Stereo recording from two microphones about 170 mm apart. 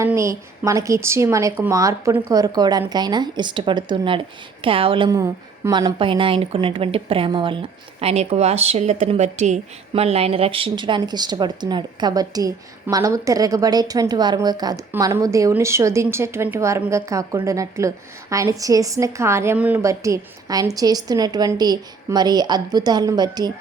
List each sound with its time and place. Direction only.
0.0 s a woman's voice: 15° right (ahead or behind)